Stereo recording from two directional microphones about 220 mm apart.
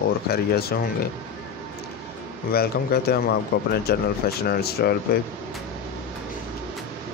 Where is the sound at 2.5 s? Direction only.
45° left (ahead or behind).